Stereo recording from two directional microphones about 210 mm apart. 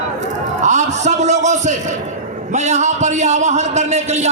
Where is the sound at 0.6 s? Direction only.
35° right (ahead or behind).